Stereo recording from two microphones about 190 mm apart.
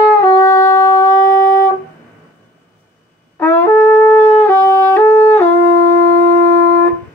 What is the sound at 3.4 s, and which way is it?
Wind instrument, 10° left (ahead or behind).